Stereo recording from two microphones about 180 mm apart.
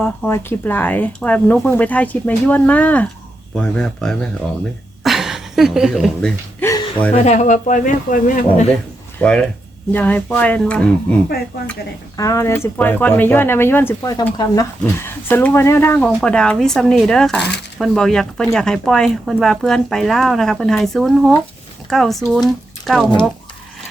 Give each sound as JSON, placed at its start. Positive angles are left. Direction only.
{"t": 0.0, "sound": "speech", "side_deg": 10}
{"t": 5.0, "sound": "a sound", "side_deg": 0}
{"t": 6.6, "sound": "a sound", "side_deg": 15}
{"t": 7.3, "sound": "speech", "side_deg": 45}
{"t": 9.1, "sound": "speech", "side_deg": 5}
{"t": 12.1, "sound": "speech", "side_deg": 15}